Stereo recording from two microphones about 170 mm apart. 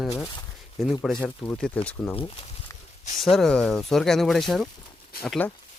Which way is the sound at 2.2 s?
35° left (ahead or behind).